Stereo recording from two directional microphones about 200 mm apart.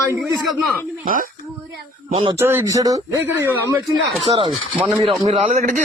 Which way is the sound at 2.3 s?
10° right (ahead or behind).